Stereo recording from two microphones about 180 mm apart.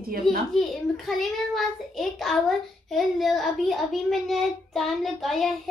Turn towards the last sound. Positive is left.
turn(degrees=0)  # may be behind; listen again after turning